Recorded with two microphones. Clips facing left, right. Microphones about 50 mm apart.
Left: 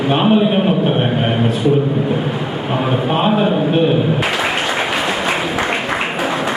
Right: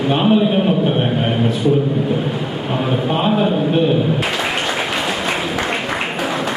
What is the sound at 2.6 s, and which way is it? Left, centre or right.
A man's voice, centre.